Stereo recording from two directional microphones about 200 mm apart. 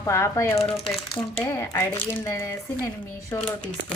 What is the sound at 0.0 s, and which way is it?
Speech, 15° left (ahead or behind).